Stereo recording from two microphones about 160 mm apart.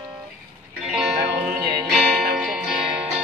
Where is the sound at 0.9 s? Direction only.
5° right (ahead or behind).